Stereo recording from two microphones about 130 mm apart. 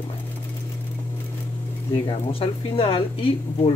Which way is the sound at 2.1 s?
45° left (ahead or behind).